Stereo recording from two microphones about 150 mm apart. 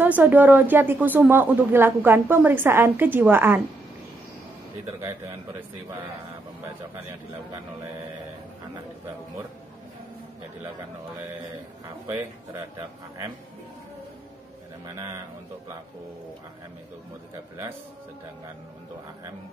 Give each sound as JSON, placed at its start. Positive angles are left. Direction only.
{"t": 0.0, "sound": "speech", "side_deg": -10}
{"t": 11.8, "sound": "speech", "side_deg": -15}